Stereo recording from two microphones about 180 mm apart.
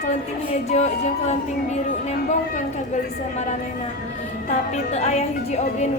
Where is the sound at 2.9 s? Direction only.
40° left (ahead or behind).